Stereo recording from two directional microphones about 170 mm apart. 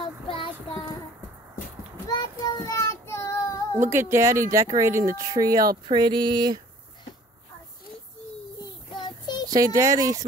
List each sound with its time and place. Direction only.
0.0 s child singing: 30° left (ahead or behind)
2.0 s child singing: 25° left (ahead or behind)
3.9 s speech: 15° right (ahead or behind)
8.9 s child singing: 25° left (ahead or behind)
9.5 s speech: 20° right (ahead or behind)